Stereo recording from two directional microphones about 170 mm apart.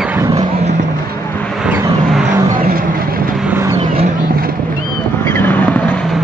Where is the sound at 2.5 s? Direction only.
55° right (ahead or behind).